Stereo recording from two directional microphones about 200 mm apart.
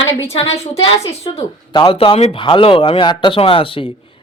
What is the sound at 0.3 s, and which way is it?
Speech, 30° left (ahead or behind).